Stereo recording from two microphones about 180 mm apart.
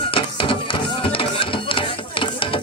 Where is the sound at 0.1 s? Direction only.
30° left (ahead or behind).